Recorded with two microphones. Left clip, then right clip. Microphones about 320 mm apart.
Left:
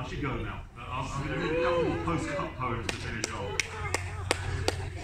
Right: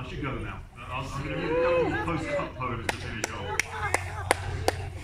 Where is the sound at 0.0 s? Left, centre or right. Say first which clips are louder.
Even; centre.